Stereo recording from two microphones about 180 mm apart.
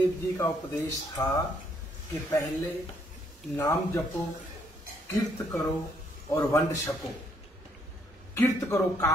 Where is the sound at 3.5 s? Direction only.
10° left (ahead or behind).